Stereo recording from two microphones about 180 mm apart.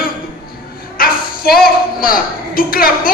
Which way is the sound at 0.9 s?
55° left (ahead or behind).